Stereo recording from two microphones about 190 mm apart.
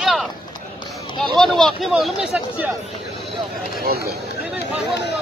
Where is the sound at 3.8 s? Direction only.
55° right (ahead or behind).